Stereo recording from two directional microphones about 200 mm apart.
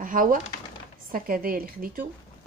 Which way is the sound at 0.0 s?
45° right (ahead or behind).